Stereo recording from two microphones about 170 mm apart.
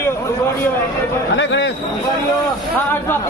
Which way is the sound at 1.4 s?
90° left.